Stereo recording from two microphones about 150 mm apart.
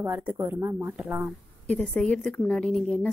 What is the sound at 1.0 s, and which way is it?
Speech, 5° right (ahead or behind).